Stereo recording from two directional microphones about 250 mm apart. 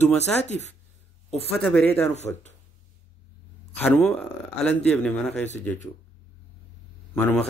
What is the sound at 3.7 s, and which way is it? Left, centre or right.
Speech, centre.